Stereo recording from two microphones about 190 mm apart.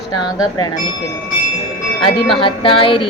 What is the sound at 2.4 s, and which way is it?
Speech, 25° left (ahead or behind).